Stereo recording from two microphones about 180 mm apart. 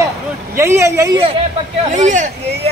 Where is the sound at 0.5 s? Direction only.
15° right (ahead or behind).